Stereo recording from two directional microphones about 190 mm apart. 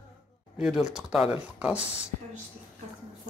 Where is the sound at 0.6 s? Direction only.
5° right (ahead or behind).